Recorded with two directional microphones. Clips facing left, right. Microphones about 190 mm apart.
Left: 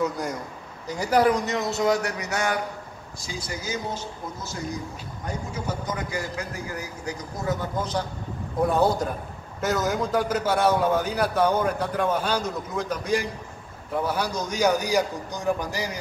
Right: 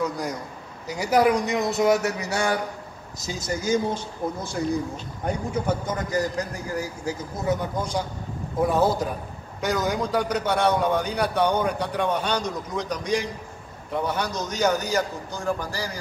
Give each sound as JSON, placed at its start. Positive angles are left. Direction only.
{"t": 0.0, "sound": "a man's voice", "side_deg": 0}
{"t": 0.8, "sound": "speech", "side_deg": -10}
{"t": 3.2, "sound": "a man's voice", "side_deg": -45}
{"t": 7.4, "sound": "a man's voice", "side_deg": -10}